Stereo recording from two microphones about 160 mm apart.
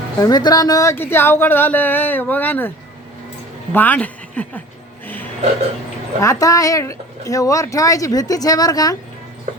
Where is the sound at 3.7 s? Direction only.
10° left (ahead or behind).